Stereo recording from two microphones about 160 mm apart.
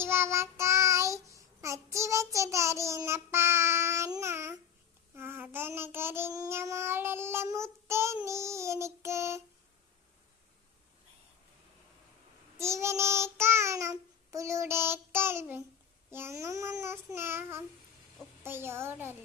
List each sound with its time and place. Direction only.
0.0 s child singing: 15° right (ahead or behind)
12.5 s child singing: 15° right (ahead or behind)